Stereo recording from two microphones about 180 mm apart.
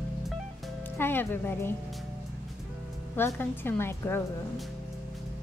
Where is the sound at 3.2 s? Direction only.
10° left (ahead or behind).